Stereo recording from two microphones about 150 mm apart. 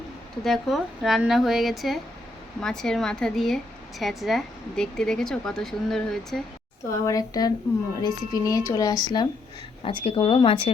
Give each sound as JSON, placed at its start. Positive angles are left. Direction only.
{"t": 0.4, "sound": "speech", "side_deg": 0}
{"t": 7.0, "sound": "speech", "side_deg": 25}
{"t": 9.8, "sound": "speech", "side_deg": 35}